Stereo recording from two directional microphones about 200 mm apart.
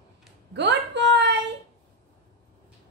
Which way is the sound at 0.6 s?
60° right (ahead or behind).